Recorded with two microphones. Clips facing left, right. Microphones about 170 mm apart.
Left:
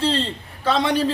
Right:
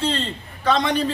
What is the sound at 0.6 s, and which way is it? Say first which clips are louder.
Speech: even; 5° left (ahead or behind).